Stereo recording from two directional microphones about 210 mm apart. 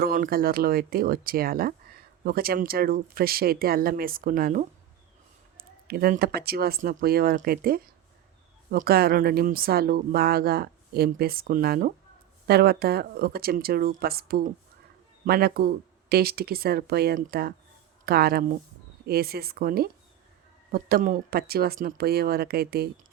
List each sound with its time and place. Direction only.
0.0 s speech: 45° right (ahead or behind)